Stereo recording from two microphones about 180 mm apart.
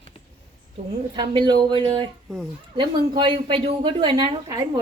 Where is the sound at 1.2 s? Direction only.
25° right (ahead or behind).